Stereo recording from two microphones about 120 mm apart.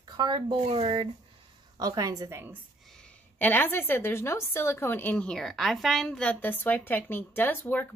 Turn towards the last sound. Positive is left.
turn(degrees=15)  # may be behind; listen again after turning